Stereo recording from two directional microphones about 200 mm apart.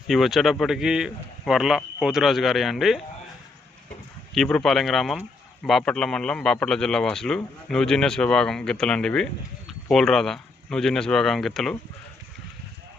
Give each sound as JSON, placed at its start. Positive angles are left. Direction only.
{"t": 0.1, "sound": "a man's voice", "side_deg": 0}
{"t": 4.4, "sound": "a man's voice", "side_deg": 0}